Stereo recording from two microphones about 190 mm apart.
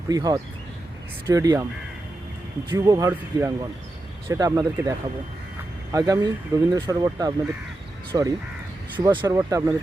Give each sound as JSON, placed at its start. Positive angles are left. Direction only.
{"t": 0.1, "sound": "speech", "side_deg": -20}
{"t": 2.6, "sound": "speech", "side_deg": -20}